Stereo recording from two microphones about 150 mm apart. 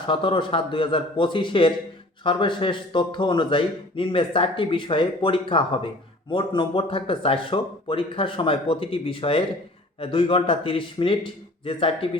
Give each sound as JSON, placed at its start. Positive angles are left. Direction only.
{"t": 0.1, "sound": "a man's voice", "side_deg": 35}